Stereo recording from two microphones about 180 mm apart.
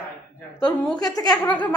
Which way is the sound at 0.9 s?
20° left (ahead or behind).